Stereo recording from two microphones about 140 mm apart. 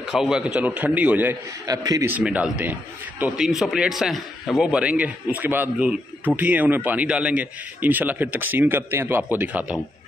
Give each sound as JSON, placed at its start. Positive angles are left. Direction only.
{"t": 0.1, "sound": "a man's voice", "side_deg": -5}
{"t": 1.7, "sound": "a man's voice", "side_deg": -25}
{"t": 2.0, "sound": "a man's voice", "side_deg": -10}